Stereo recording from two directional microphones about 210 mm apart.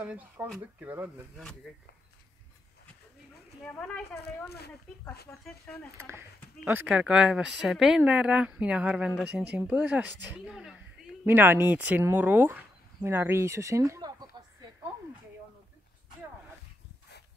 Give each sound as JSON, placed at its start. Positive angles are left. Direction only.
{"t": 0.0, "sound": "speech", "side_deg": -5}
{"t": 1.3, "sound": "speech", "side_deg": 5}
{"t": 3.6, "sound": "speech", "side_deg": 5}
{"t": 4.5, "sound": "speech", "side_deg": 50}
{"t": 6.0, "sound": "speech", "side_deg": -10}
{"t": 10.4, "sound": "a sound", "side_deg": 0}
{"t": 11.2, "sound": "speech", "side_deg": -10}